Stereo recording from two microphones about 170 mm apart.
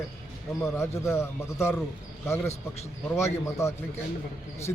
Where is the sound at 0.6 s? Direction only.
15° left (ahead or behind).